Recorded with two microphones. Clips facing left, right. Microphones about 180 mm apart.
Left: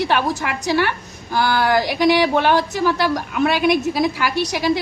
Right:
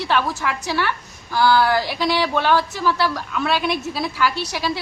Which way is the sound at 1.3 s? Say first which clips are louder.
Even; 20° left (ahead or behind).